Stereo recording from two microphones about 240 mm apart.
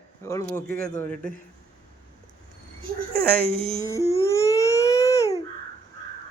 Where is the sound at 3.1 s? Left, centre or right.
Right.